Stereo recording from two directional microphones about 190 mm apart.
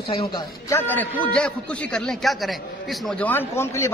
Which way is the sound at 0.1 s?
30° left (ahead or behind).